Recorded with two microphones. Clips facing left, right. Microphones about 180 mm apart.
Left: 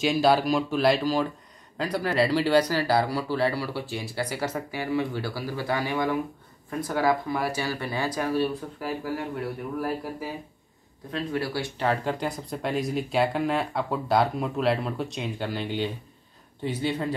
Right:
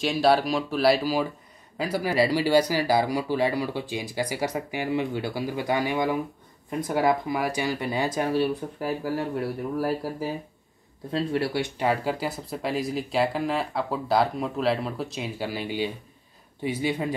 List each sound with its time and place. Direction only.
0.0 s speech: centre (ahead or behind); by 8.9 s 30° right (ahead or behind)
11.1 s speech: 30° right (ahead or behind)
11.8 s speech: 10° right (ahead or behind)